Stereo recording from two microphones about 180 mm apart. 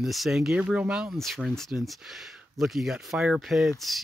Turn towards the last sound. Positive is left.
turn(degrees=0)  # may be behind; listen again after turning